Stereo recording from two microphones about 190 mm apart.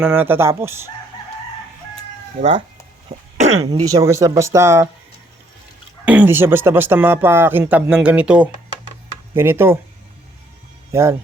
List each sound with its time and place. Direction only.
0.0 s a man's voice: 10° right (ahead or behind)
3.3 s a sound: 35° right (ahead or behind)
3.8 s a man's voice: 15° right (ahead or behind)
6.1 s a man's voice: 10° right (ahead or behind)
10.9 s a man's voice: 15° right (ahead or behind)